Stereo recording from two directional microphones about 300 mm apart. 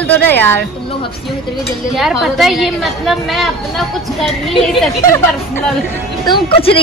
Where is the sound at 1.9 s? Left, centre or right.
Centre.